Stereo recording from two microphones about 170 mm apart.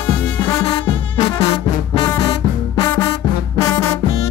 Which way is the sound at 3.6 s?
15° left (ahead or behind).